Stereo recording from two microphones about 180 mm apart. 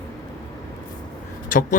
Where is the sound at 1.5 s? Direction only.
45° left (ahead or behind).